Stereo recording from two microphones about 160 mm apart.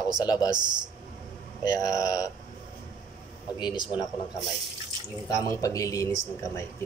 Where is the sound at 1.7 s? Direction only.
20° left (ahead or behind).